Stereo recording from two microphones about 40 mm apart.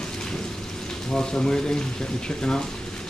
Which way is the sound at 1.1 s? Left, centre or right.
Left.